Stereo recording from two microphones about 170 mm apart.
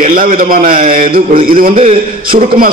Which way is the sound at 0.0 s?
50° right (ahead or behind).